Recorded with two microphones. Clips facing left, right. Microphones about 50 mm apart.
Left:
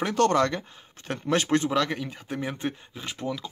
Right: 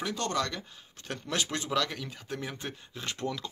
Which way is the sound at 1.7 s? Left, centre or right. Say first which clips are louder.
Left 5 dB; left.